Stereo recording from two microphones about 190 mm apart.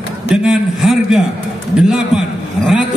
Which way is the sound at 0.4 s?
5° right (ahead or behind).